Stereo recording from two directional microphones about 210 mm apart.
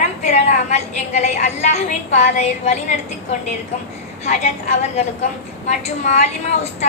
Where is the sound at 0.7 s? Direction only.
35° left (ahead or behind).